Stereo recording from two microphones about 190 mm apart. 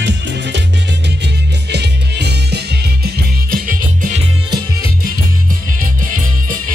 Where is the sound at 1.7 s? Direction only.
60° right (ahead or behind).